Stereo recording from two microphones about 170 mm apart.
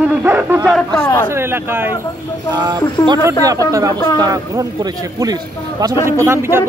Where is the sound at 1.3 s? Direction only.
15° right (ahead or behind).